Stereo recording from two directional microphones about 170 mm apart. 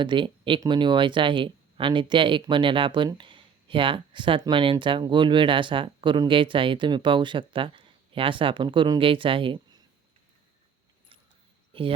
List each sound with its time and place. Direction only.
0.0 s speech: 30° right (ahead or behind)